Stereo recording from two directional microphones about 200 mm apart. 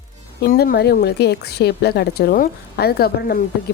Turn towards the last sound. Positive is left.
turn(degrees=50)  # may be behind; listen again after turning